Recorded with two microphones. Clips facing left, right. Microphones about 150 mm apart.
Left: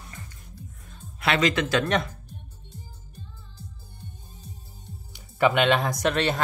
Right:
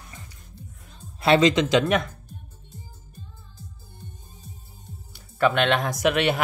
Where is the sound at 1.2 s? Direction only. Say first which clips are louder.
Right 6 dB; 30° right (ahead or behind).